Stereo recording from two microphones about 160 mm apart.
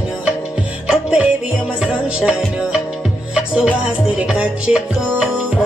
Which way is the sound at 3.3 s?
5° right (ahead or behind).